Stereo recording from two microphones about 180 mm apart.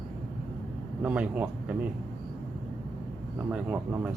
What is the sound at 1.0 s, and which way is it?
Speech, 5° right (ahead or behind).